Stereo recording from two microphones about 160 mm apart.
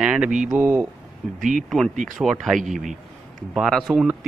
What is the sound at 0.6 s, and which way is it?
Speech, 15° right (ahead or behind).